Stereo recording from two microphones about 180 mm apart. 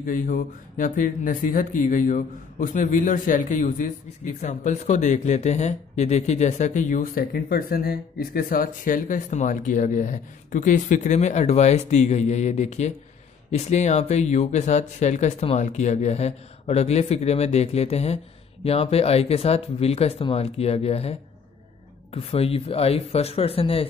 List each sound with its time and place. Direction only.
0.0 s speech: 50° left (ahead or behind); by 23.9 s 30° left (ahead or behind)